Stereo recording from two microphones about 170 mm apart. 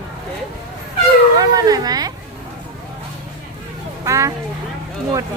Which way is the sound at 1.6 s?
20° right (ahead or behind).